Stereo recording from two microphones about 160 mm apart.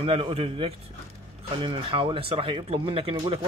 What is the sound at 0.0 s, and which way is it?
Speech, 40° right (ahead or behind).